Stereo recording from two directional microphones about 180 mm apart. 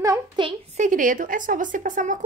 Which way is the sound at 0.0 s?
15° right (ahead or behind).